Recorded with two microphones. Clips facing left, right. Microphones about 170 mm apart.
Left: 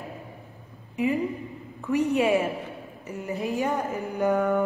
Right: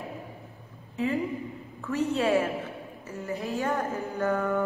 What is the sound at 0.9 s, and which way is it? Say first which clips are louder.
A woman's voice: left 3 dB; 15° left (ahead or behind).